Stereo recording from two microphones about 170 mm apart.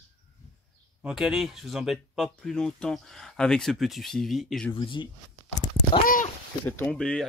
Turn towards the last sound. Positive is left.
turn(degrees=5)  # may be behind; listen again after turning